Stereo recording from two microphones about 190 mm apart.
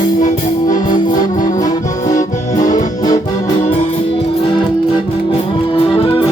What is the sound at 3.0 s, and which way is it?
Music, 20° left (ahead or behind).